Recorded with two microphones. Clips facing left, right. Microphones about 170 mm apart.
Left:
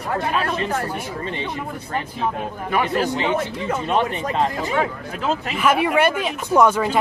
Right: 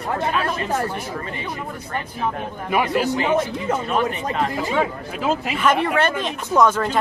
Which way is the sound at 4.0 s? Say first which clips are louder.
Left 1 dB; 30° left (ahead or behind).